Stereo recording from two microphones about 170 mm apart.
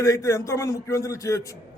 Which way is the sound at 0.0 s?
20° left (ahead or behind).